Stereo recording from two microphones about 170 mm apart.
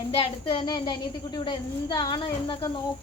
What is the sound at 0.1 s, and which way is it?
A woman's voice, 30° left (ahead or behind).